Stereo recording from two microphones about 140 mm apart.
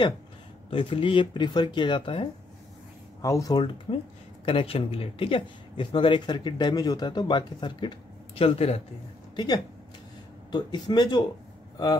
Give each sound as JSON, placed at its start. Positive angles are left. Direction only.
{"t": 0.7, "sound": "speech", "side_deg": 40}
{"t": 3.2, "sound": "speech", "side_deg": 25}
{"t": 8.4, "sound": "a man's voice", "side_deg": 45}
{"t": 9.3, "sound": "speech", "side_deg": 30}